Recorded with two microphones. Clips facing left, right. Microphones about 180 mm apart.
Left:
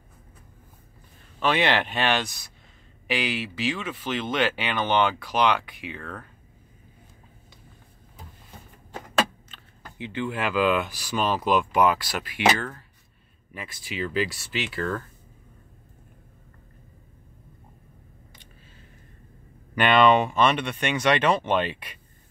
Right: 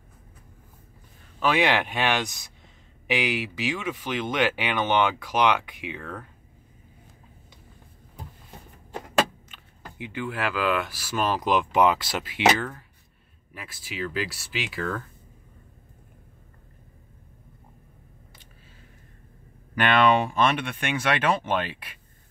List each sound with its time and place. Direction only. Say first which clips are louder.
1.4 s speech: even; 10° right (ahead or behind)
9.5 s speech: right 1 dB; 10° right (ahead or behind)
13.5 s speech: left 3 dB; 5° right (ahead or behind)
19.7 s speech: left 2 dB; 5° right (ahead or behind)